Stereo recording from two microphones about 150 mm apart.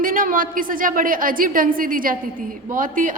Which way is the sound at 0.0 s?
65° right (ahead or behind).